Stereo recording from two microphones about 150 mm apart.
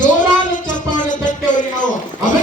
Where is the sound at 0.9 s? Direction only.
55° left (ahead or behind).